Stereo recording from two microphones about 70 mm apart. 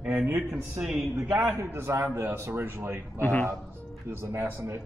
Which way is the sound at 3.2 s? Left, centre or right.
Left.